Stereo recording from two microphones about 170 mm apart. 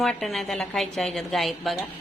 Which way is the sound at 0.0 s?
Centre (ahead or behind).